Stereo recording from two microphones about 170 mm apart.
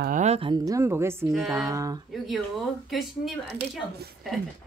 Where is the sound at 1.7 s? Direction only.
20° right (ahead or behind).